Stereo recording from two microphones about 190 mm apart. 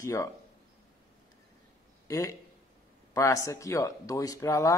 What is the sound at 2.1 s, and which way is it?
Speech, 15° left (ahead or behind).